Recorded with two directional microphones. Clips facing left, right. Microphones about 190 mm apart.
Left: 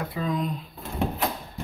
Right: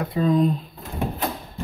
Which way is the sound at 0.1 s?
35° right (ahead or behind).